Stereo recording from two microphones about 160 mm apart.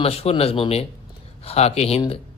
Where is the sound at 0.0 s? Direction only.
40° left (ahead or behind).